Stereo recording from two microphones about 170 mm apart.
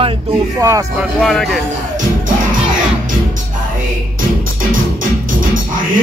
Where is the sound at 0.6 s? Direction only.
20° right (ahead or behind).